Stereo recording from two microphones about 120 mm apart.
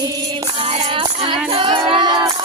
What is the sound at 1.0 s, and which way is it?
Music, 45° right (ahead or behind).